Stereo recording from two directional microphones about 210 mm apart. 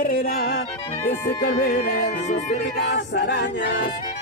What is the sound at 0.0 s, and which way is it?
Music, 45° left (ahead or behind).